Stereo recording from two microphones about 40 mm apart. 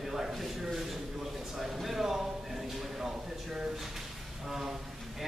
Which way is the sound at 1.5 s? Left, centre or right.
Centre.